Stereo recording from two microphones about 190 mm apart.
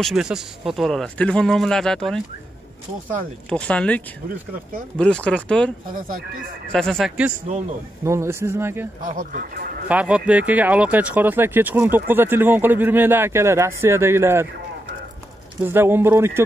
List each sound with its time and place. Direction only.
0.0 s speech: 5° right (ahead or behind)
3.4 s speech: 5° left (ahead or behind)
6.7 s speech: 5° left (ahead or behind)
8.0 s speech: 15° right (ahead or behind)
9.0 s speech: 45° right (ahead or behind)
9.8 s speech: 5° right (ahead or behind)
15.6 s speech: 10° right (ahead or behind)